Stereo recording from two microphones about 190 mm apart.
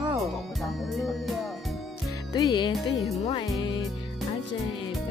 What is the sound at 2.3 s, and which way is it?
Music, 20° left (ahead or behind).